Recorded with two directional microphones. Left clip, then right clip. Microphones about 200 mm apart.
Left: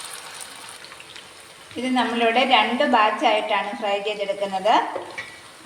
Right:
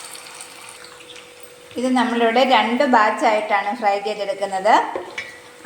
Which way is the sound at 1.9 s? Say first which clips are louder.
Right 2 dB; 20° right (ahead or behind).